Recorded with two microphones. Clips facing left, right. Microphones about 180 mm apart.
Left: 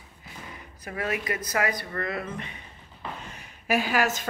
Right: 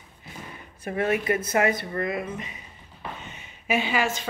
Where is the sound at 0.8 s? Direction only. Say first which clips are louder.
Right 6 dB; 25° right (ahead or behind); by 2.6 s 5° right (ahead or behind).